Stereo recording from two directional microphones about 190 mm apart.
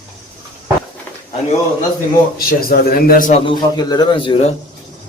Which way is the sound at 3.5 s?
20° left (ahead or behind).